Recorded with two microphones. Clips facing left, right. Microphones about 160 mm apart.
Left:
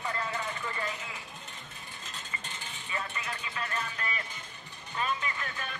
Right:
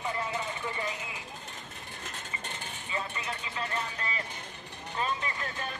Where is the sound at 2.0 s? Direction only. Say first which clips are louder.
Right 3 dB; 60° right (ahead or behind).